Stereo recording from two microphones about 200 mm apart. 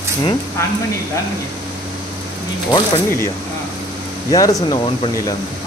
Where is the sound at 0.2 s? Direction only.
20° left (ahead or behind).